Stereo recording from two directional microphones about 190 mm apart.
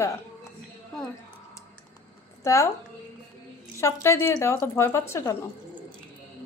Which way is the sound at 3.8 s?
15° left (ahead or behind).